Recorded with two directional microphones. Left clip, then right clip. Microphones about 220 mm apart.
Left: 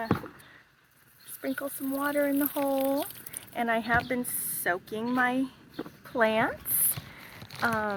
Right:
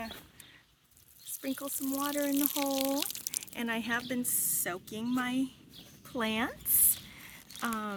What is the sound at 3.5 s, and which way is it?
Speech, 65° right (ahead or behind).